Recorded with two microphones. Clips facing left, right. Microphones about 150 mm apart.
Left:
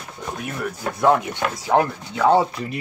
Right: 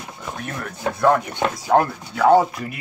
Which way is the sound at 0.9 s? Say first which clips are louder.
Even; 20° left (ahead or behind).